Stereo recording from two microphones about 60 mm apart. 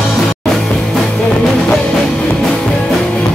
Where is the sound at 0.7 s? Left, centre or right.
Centre.